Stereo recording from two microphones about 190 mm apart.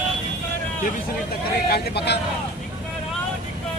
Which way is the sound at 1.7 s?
60° left (ahead or behind).